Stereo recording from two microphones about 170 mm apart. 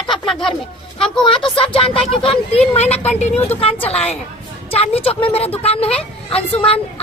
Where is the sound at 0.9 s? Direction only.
5° left (ahead or behind).